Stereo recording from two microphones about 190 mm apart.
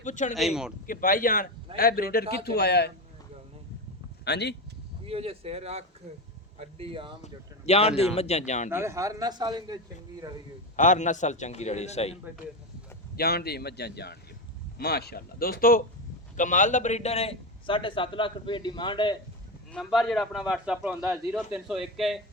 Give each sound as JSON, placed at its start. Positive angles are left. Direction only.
{"t": 0.0, "sound": "speech", "side_deg": 40}
{"t": 0.3, "sound": "a man's voice", "side_deg": 0}
{"t": 0.9, "sound": "speech", "side_deg": 50}
{"t": 4.3, "sound": "speech", "side_deg": 60}
{"t": 5.0, "sound": "a man's voice", "side_deg": -30}
{"t": 7.2, "sound": "a man's voice", "side_deg": 35}
{"t": 8.7, "sound": "a man's voice", "side_deg": -15}
{"t": 10.8, "sound": "a man's voice", "side_deg": 40}
{"t": 13.1, "sound": "a man's voice", "side_deg": 55}
{"t": 19.7, "sound": "a man's voice", "side_deg": 0}